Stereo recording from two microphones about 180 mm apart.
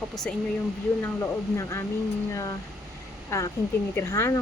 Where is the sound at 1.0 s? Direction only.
15° left (ahead or behind).